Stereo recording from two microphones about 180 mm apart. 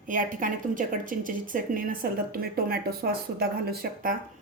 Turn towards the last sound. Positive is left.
turn(degrees=-60)  # may be behind; listen again after turning